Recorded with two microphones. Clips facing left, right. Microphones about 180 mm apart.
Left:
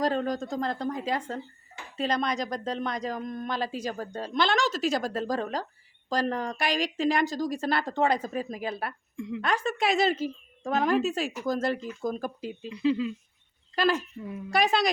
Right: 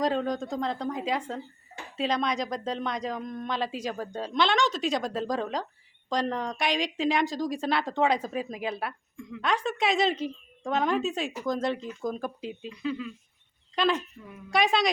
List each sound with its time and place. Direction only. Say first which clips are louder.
0.0 s speech: even; centre (ahead or behind)
12.7 s speech: left 8 dB; 30° left (ahead or behind)
13.7 s speech: left 1 dB; 5° left (ahead or behind)